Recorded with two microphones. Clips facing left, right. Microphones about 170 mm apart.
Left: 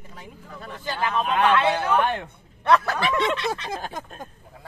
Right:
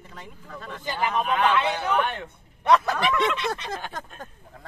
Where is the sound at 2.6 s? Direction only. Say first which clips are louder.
Even; 15° right (ahead or behind).